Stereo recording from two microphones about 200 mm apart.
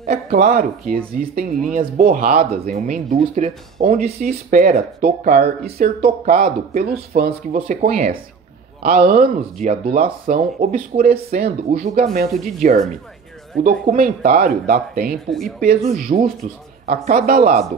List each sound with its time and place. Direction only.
0.3 s speech: 50° right (ahead or behind)
3.8 s speech: 45° right (ahead or behind)
15.2 s speech: centre (ahead or behind)
15.9 s speech: 45° right (ahead or behind)